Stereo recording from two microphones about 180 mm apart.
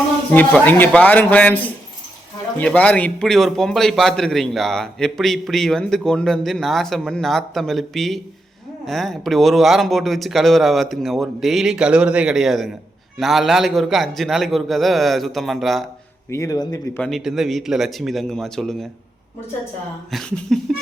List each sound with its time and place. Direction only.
0.3 s speech: 10° left (ahead or behind)
2.6 s a man's voice: 10° left (ahead or behind)
16.3 s speech: 20° left (ahead or behind)
17.0 s a man's voice: centre (ahead or behind)
20.1 s a man's voice: centre (ahead or behind)